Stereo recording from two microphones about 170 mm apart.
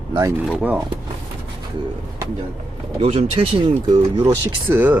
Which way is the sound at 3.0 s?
35° right (ahead or behind).